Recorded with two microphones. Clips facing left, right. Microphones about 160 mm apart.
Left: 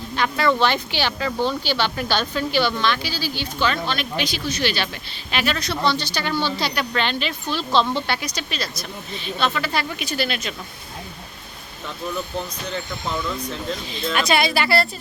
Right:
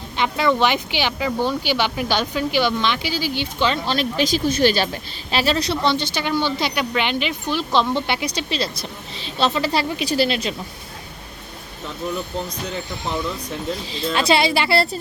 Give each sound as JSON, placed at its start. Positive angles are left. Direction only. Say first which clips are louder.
{"t": 0.2, "sound": "speech", "louder": "right 1 dB", "side_deg": -20}
{"t": 3.9, "sound": "speech", "louder": "right 6 dB", "side_deg": -40}
{"t": 13.9, "sound": "speech", "louder": "right 2 dB", "side_deg": -30}